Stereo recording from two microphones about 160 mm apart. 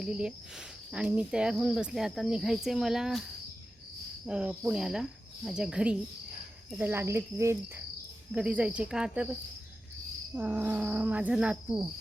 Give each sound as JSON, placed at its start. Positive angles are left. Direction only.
{"t": 0.0, "sound": "speech", "side_deg": -5}
{"t": 4.3, "sound": "speech", "side_deg": -5}